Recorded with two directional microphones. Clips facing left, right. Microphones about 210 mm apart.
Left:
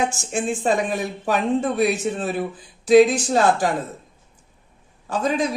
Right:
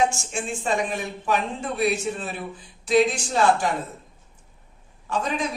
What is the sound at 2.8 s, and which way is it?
Speech, 40° left (ahead or behind).